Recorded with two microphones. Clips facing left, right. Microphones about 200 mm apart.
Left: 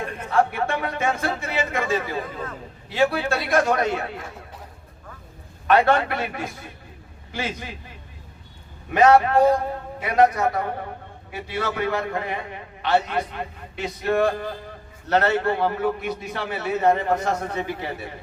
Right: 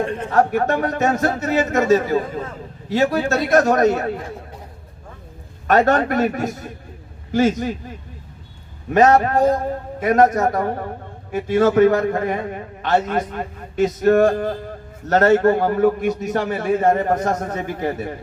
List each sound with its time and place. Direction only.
0.0 s a sound: 30° right (ahead or behind)
0.3 s a man's voice: 45° right (ahead or behind)
5.6 s a man's voice: 45° right (ahead or behind)